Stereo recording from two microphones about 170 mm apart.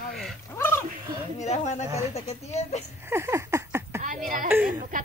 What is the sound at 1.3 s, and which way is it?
Speech, 45° left (ahead or behind).